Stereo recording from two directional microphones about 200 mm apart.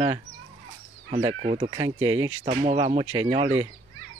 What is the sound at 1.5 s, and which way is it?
Speech, 20° right (ahead or behind).